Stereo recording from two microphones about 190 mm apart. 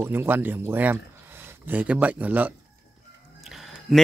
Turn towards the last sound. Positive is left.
turn(degrees=0)  # may be behind; listen again after turning